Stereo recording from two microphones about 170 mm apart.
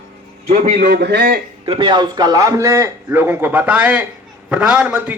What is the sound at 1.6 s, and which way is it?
A man's voice, 30° right (ahead or behind).